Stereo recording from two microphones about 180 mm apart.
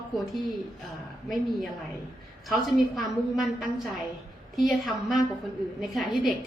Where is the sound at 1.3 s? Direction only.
Centre (ahead or behind).